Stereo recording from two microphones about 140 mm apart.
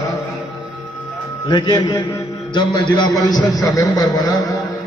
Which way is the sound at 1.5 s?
30° left (ahead or behind).